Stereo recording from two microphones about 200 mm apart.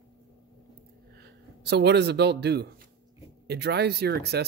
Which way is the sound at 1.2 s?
55° right (ahead or behind).